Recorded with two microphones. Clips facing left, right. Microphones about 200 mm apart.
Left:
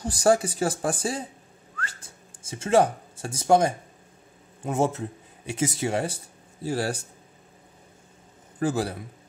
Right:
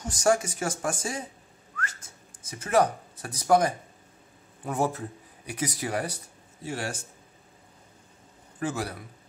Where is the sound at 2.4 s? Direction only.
25° left (ahead or behind).